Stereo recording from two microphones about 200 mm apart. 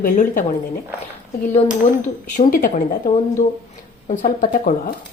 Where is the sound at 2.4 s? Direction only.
45° left (ahead or behind).